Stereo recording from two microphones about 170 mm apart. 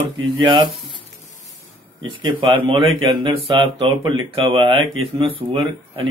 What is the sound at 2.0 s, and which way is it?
Speech, 30° right (ahead or behind).